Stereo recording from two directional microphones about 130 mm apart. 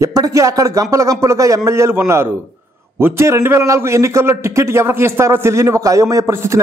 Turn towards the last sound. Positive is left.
turn(degrees=-25)  # may be behind; listen again after turning